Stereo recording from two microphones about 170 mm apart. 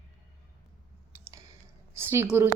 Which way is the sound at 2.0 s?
15° right (ahead or behind).